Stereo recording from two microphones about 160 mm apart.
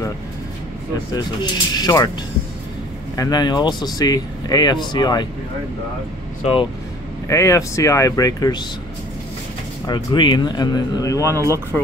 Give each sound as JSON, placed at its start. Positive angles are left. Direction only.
{"t": 1.1, "sound": "speech", "side_deg": 25}
{"t": 3.2, "sound": "speech", "side_deg": 25}
{"t": 6.4, "sound": "speech", "side_deg": 35}
{"t": 7.2, "sound": "speech", "side_deg": 20}
{"t": 9.8, "sound": "speech", "side_deg": 30}
{"t": 11.7, "sound": "speech", "side_deg": 5}